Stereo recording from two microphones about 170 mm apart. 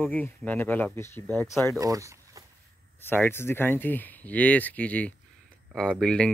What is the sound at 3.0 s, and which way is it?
Speech, 10° left (ahead or behind).